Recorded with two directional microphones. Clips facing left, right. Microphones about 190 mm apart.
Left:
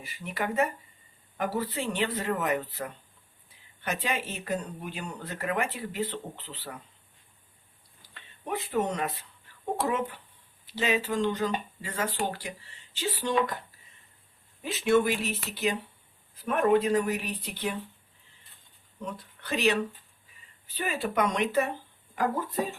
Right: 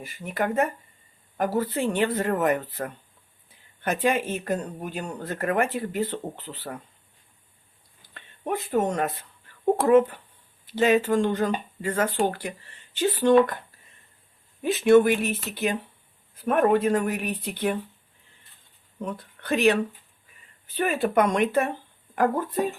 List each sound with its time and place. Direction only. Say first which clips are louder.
0.0 s speech: right 5 dB; 50° right (ahead or behind)
8.1 s speech: right 5 dB; 50° right (ahead or behind)
14.6 s speech: right 7 dB; 50° right (ahead or behind)
16.4 s speech: right 3 dB; 50° right (ahead or behind)
18.9 s speech: right 5 dB; 55° right (ahead or behind)
20.3 s a sound: right 4 dB; 55° right (ahead or behind)
20.7 s speech: right 7 dB; 55° right (ahead or behind)